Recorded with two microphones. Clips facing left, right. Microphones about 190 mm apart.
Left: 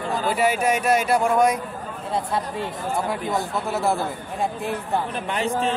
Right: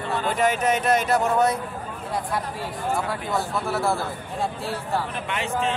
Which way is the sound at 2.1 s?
25° left (ahead or behind).